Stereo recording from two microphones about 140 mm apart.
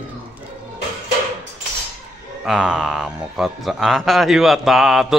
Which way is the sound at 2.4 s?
5° right (ahead or behind).